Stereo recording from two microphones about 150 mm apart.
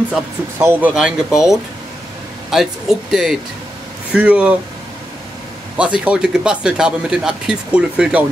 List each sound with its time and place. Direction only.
0.1 s speech: 15° right (ahead or behind)
5.8 s speech: 5° right (ahead or behind)